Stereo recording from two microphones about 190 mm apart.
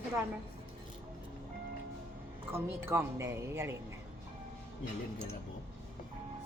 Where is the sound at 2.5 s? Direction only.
15° right (ahead or behind).